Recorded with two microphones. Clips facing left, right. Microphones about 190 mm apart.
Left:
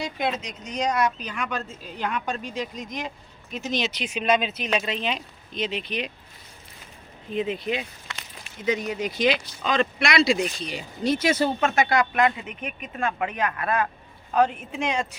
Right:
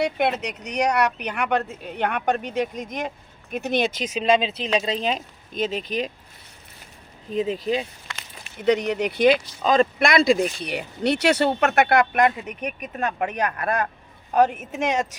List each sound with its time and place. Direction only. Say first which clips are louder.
0.0 s speech: right 5 dB; 65° right (ahead or behind)
4.0 s speech: even; 35° right (ahead or behind)
7.3 s speech: right 3 dB; 35° right (ahead or behind)
8.6 s speech: right 5 dB; 70° right (ahead or behind); by 10.3 s 50° right (ahead or behind)
10.4 s speech: right 4 dB; 65° right (ahead or behind); by 15.0 s 45° right (ahead or behind)